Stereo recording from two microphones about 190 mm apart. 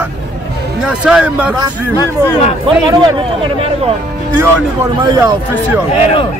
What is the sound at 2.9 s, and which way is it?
Speech, 25° right (ahead or behind).